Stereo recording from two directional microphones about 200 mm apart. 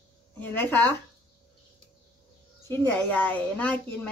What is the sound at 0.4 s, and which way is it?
Speech, 10° left (ahead or behind).